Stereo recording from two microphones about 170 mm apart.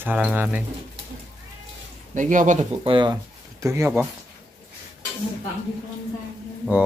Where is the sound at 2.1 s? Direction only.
50° right (ahead or behind).